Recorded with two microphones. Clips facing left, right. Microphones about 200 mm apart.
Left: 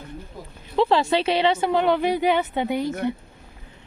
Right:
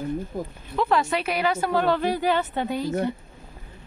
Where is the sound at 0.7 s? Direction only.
25° left (ahead or behind).